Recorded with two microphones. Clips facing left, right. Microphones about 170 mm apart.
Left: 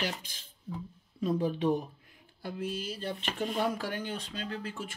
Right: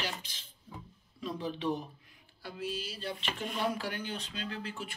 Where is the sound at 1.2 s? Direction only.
50° left (ahead or behind).